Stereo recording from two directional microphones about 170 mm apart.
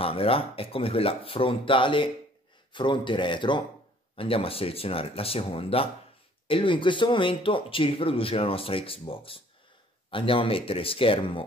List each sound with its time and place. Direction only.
0.0 s speech: 35° left (ahead or behind)